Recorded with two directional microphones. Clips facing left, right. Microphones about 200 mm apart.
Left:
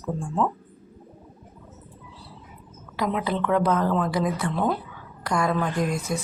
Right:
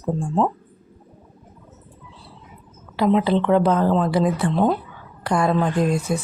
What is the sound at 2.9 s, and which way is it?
A woman's voice, 30° right (ahead or behind).